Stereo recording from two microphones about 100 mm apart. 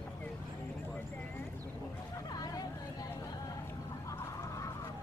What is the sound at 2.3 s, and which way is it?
Vehicle, 40° left (ahead or behind).